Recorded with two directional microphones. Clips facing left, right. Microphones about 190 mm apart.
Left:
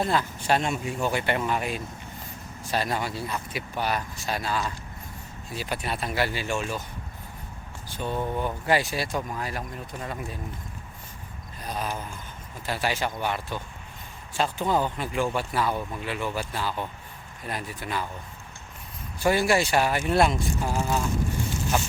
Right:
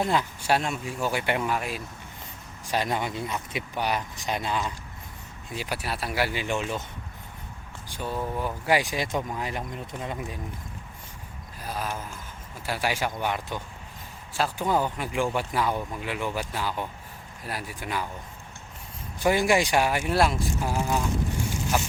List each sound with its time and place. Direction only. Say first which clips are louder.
0.0 s speech: even; 15° right (ahead or behind)
1.5 s speech: left 2 dB; centre (ahead or behind)
2.6 s speech: even; 15° right (ahead or behind)
7.9 s speech: left 2 dB; 15° right (ahead or behind)
11.6 s a sound: left 1 dB; 5° right (ahead or behind)
12.6 s speech: even; 10° right (ahead or behind)
19.2 s speech: even; 15° right (ahead or behind)